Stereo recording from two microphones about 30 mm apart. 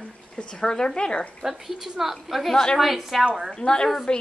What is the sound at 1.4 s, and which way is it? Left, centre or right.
A woman's voice, centre.